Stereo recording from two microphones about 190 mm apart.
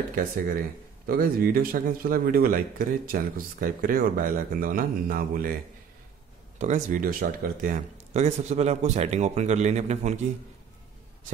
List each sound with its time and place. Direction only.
0.1 s a man's voice: 45° right (ahead or behind)
6.6 s speech: 45° right (ahead or behind)